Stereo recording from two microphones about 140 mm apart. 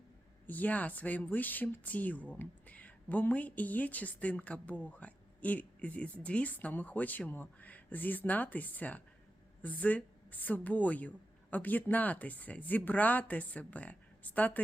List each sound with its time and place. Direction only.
0.4 s a woman's voice: 10° left (ahead or behind)